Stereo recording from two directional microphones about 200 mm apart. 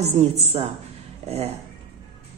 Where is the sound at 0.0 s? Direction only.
35° right (ahead or behind).